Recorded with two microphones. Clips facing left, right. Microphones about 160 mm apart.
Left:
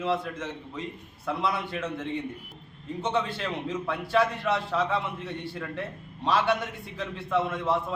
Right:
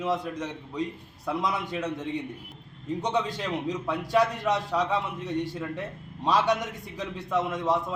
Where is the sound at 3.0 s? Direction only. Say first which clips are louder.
Left 1 dB; 15° right (ahead or behind).